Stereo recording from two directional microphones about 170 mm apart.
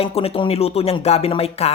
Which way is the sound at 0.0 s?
35° left (ahead or behind).